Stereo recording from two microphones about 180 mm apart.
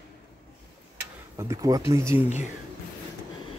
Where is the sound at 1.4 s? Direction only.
20° right (ahead or behind).